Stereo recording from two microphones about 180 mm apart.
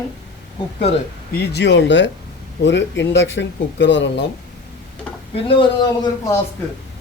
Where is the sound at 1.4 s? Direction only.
70° left (ahead or behind); by 4.2 s 85° left.